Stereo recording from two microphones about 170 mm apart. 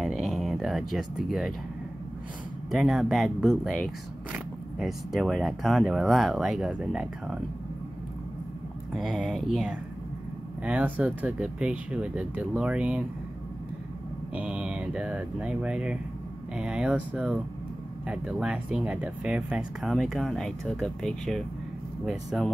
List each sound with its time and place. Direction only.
0.0 s a sound: centre (ahead or behind)
2.7 s speech: centre (ahead or behind)
8.9 s speech: 5° right (ahead or behind)
14.3 s speech: 5° right (ahead or behind)